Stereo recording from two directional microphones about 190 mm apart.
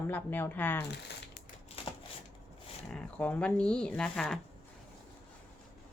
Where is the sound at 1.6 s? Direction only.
30° left (ahead or behind).